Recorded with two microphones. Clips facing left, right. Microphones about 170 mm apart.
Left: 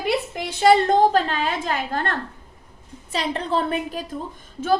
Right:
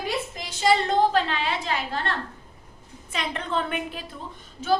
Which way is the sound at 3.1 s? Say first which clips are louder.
Left 5 dB; 35° left (ahead or behind).